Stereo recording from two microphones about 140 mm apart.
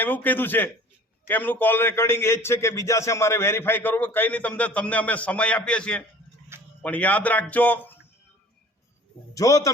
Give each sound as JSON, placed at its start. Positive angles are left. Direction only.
{"t": 0.0, "sound": "a man's voice", "side_deg": 15}
{"t": 6.5, "sound": "a sound", "side_deg": -20}
{"t": 6.8, "sound": "a man's voice", "side_deg": 10}
{"t": 9.3, "sound": "a man's voice", "side_deg": 25}